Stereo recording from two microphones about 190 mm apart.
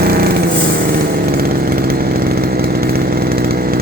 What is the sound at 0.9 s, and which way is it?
Chainsaw, 55° right (ahead or behind).